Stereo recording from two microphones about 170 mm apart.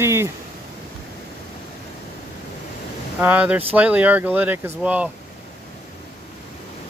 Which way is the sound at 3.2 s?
10° right (ahead or behind).